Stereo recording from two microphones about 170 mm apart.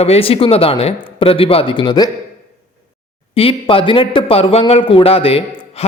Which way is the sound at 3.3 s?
35° left (ahead or behind).